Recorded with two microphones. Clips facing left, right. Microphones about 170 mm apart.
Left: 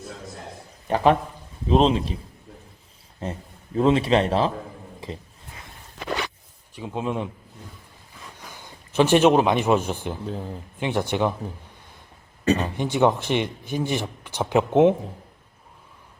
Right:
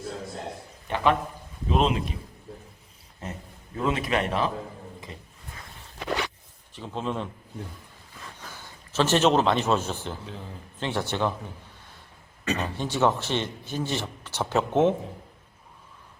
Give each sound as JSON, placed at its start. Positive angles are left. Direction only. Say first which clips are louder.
{"t": 0.9, "sound": "a man's voice", "louder": "left 5 dB", "side_deg": 35}
{"t": 3.2, "sound": "a man's voice", "louder": "left 6 dB", "side_deg": 30}
{"t": 6.7, "sound": "speech", "louder": "left 3 dB", "side_deg": 10}
{"t": 8.4, "sound": "a man's voice", "louder": "left 1 dB", "side_deg": 15}
{"t": 12.5, "sound": "speech", "louder": "left 4 dB", "side_deg": 15}